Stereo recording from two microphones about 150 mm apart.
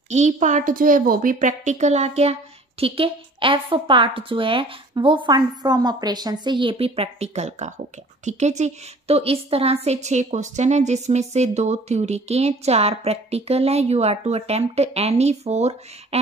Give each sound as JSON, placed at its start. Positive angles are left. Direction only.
{"t": 0.1, "sound": "a woman's voice", "side_deg": -50}